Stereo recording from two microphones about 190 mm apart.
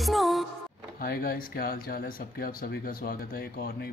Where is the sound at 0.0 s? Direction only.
Centre (ahead or behind).